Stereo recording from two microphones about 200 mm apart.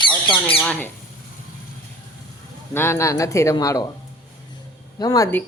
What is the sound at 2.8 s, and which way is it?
Speech, 15° left (ahead or behind).